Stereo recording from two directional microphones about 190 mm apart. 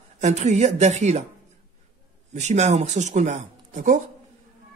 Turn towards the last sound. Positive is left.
turn(degrees=-40)  # may be behind; listen again after turning